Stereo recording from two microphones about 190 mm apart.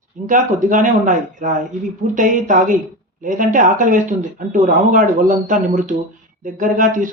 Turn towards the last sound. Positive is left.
turn(degrees=-45)  # may be behind; listen again after turning